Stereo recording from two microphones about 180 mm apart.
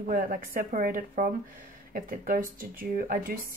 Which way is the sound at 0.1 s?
50° right (ahead or behind).